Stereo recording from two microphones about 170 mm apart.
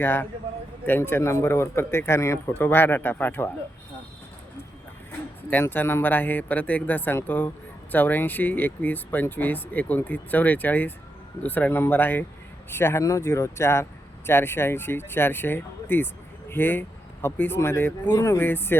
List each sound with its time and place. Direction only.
0.0 s speech: 10° left (ahead or behind)
5.5 s speech: 10° left (ahead or behind)